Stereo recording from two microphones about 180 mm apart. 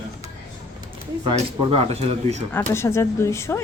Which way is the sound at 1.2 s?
30° right (ahead or behind).